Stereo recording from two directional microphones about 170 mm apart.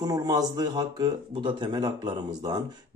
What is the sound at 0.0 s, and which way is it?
Speech, 20° right (ahead or behind).